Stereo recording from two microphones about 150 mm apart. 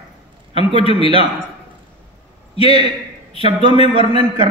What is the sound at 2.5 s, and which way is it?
Speech, 40° left (ahead or behind).